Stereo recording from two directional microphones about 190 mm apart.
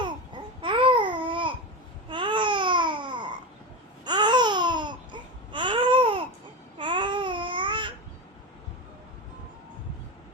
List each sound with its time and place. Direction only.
0.0 s babbling: 25° right (ahead or behind)